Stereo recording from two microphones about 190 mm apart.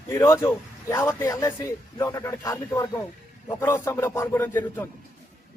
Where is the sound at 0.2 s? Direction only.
15° left (ahead or behind).